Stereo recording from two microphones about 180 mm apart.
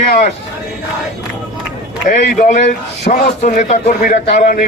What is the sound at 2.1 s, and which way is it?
Speech, 40° left (ahead or behind).